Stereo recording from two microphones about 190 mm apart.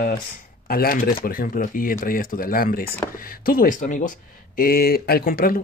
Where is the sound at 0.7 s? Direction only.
50° left (ahead or behind).